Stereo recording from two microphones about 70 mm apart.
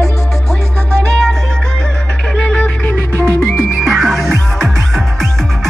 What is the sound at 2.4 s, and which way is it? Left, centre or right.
Music, centre.